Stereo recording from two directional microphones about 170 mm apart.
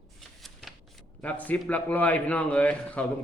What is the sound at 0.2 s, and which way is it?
Shuffling cards, centre (ahead or behind).